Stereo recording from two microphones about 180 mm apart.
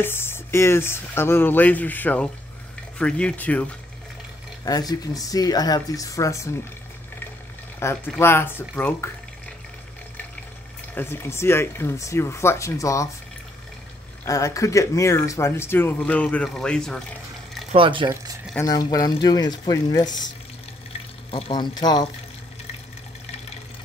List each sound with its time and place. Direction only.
0.0 s speech: 10° left (ahead or behind)
4.6 s speech: 20° left (ahead or behind)
7.8 s speech: 10° left (ahead or behind)
11.0 s speech: 15° left (ahead or behind)
14.2 s speech: 20° left (ahead or behind)
17.7 s speech: 30° right (ahead or behind)
18.6 s speech: 20° left (ahead or behind)
20.0 s speech: 45° left (ahead or behind)
21.3 s speech: 30° left (ahead or behind)